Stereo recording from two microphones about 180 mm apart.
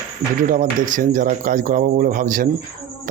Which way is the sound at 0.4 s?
45° right (ahead or behind).